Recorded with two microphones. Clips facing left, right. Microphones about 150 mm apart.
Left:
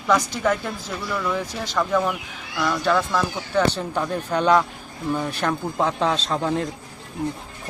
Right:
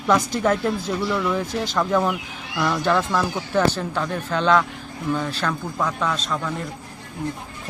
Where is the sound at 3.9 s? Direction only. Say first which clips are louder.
Left 1 dB; 15° left (ahead or behind); by 6.5 s 30° left (ahead or behind).